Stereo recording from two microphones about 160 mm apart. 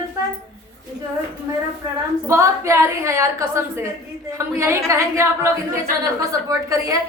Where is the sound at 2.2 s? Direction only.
20° right (ahead or behind).